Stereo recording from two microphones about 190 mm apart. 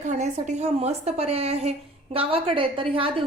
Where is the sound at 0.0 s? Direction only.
35° right (ahead or behind).